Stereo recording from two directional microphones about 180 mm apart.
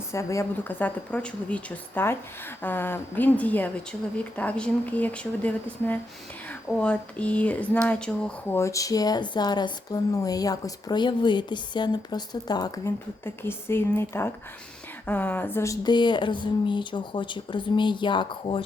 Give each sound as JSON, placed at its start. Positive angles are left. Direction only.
{"t": 0.1, "sound": "a woman's voice", "side_deg": 15}